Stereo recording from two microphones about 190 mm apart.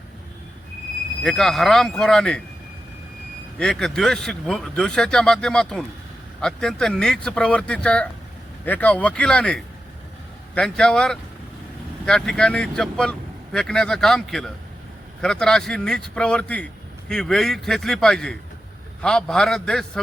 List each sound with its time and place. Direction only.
1.2 s speech: centre (ahead or behind)
3.6 s speech: 5° left (ahead or behind)